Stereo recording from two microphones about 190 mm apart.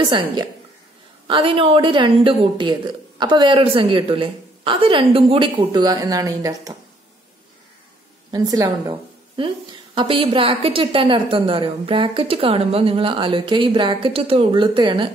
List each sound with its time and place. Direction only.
0.1 s a woman's voice: 25° right (ahead or behind)
8.3 s a woman's voice: 20° right (ahead or behind)